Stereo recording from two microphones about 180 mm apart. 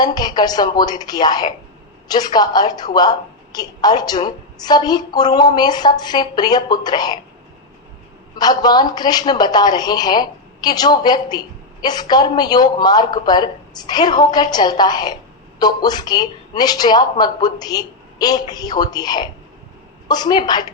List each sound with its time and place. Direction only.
0.0 s a woman's voice: 20° left (ahead or behind)
8.4 s a woman's voice: 20° left (ahead or behind)